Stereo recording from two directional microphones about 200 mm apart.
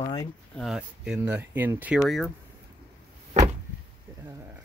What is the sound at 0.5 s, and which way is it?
Speech, centre (ahead or behind).